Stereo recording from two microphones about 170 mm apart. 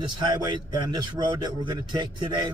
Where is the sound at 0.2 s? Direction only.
25° right (ahead or behind).